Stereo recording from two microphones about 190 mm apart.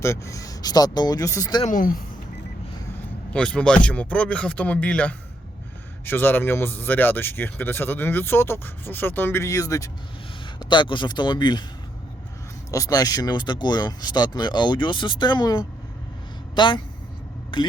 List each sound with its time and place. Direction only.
0.0 s speech: 15° left (ahead or behind)
1.6 s speech: 45° left (ahead or behind)
3.3 s a man's voice: 5° left (ahead or behind); by 11.6 s 25° left (ahead or behind)
12.7 s speech: 20° left (ahead or behind)